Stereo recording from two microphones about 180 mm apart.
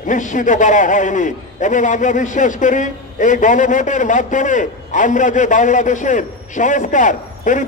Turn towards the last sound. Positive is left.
turn(degrees=45)  # may be behind; listen again after turning